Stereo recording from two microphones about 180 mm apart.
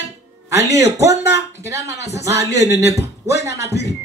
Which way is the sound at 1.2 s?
70° left (ahead or behind).